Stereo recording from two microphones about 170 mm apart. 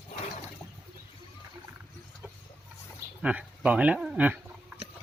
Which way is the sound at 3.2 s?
5° right (ahead or behind).